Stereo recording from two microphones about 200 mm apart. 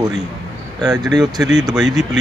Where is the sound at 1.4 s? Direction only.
Centre (ahead or behind).